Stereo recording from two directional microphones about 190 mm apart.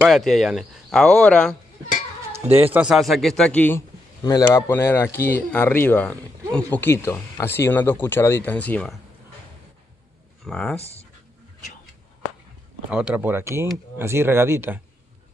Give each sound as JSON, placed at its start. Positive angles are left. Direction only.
{"t": 0.0, "sound": "speech", "side_deg": 0}
{"t": 2.7, "sound": "speech", "side_deg": -5}
{"t": 4.2, "sound": "speech", "side_deg": 20}
{"t": 10.4, "sound": "speech", "side_deg": 5}
{"t": 10.8, "sound": "speech", "side_deg": 35}
{"t": 12.9, "sound": "speech", "side_deg": -5}